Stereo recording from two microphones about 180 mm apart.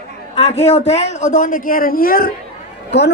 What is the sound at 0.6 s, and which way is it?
Speech, 35° left (ahead or behind).